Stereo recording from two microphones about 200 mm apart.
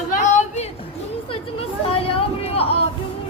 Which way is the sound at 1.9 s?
30° left (ahead or behind).